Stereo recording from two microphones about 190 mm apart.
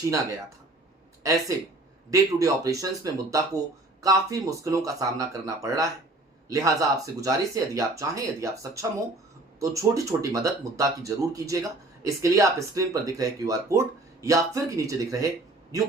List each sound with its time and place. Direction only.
0.1 s speech: 15° right (ahead or behind)